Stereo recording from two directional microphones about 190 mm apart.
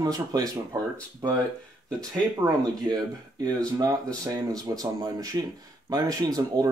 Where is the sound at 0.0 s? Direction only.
20° right (ahead or behind).